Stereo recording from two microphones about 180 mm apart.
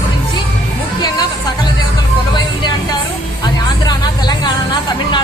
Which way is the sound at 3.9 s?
25° left (ahead or behind).